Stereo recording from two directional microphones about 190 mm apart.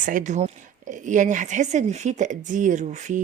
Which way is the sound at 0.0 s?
45° right (ahead or behind).